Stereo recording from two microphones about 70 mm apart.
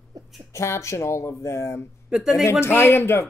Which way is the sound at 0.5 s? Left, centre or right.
Left.